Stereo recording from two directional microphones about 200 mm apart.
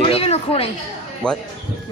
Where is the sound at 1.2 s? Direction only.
5° left (ahead or behind).